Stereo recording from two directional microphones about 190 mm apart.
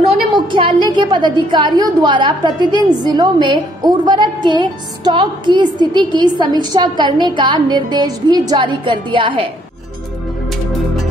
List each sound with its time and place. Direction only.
0.1 s a woman's voice: 25° right (ahead or behind)